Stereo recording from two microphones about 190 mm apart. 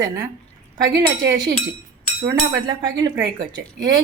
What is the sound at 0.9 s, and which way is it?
Speech, 60° right (ahead or behind).